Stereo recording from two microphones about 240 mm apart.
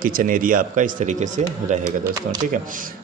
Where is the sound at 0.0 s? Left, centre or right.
Right.